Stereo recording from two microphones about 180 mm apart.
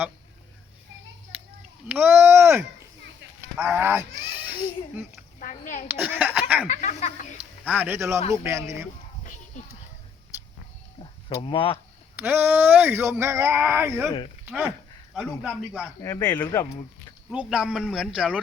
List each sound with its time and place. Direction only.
1.9 s a child's voice: 10° right (ahead or behind)
5.4 s a child's voice: 45° left (ahead or behind)
5.9 s speech: 10° right (ahead or behind)
6.7 s speech: 40° left (ahead or behind)
7.6 s speech: 10° right (ahead or behind)
11.0 s speech: 30° left (ahead or behind)
12.1 s speech: 10° right (ahead or behind)
15.1 s a man's voice: 5° right (ahead or behind)
16.0 s speech: 20° left (ahead or behind)
17.3 s a man's voice: 5° right (ahead or behind)